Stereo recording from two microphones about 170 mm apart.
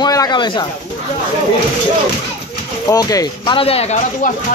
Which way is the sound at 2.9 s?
20° left (ahead or behind).